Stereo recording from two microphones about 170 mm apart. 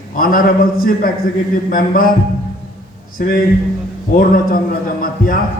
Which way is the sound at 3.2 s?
55° left (ahead or behind).